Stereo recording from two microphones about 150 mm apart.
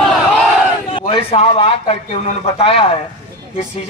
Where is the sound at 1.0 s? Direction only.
40° left (ahead or behind).